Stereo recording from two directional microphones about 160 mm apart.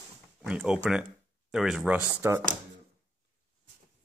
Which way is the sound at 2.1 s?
15° right (ahead or behind).